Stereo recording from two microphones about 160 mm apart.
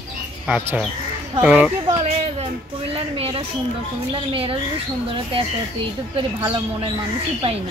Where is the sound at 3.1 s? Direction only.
40° right (ahead or behind).